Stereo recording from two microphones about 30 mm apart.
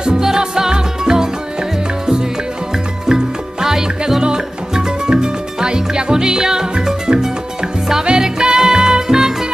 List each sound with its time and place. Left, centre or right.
0.0 s music: centre
3.1 s music: centre
4.2 s salsa music: right
6.7 s music: right